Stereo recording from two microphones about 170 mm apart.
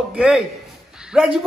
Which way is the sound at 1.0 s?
5° right (ahead or behind).